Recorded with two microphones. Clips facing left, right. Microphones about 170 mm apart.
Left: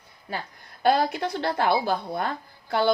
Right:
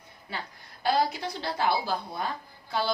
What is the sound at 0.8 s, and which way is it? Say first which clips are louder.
A woman's voice: left 4 dB; 60° left (ahead or behind).